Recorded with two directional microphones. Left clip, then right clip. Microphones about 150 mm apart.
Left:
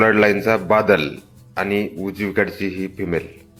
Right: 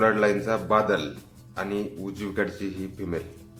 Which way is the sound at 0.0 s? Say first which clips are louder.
Left 7 dB; 35° left (ahead or behind).